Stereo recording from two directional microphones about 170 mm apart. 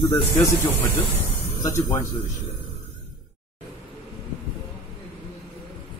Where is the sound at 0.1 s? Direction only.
10° left (ahead or behind).